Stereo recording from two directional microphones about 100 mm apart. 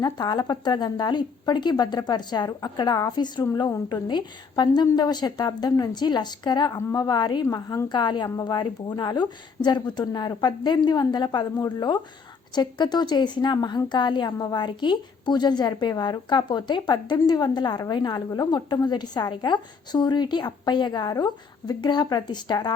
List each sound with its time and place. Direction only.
0.0 s a woman's voice: 45° left (ahead or behind)
7.4 s a woman's voice: 35° left (ahead or behind)